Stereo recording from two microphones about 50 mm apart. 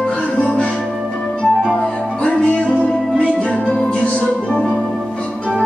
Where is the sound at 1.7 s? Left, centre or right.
Left.